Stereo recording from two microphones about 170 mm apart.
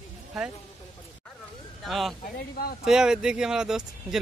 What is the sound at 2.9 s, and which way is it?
Speech, 5° right (ahead or behind).